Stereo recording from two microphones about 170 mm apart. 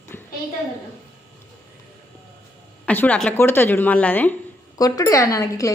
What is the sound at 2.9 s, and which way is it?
A woman's voice, 10° left (ahead or behind).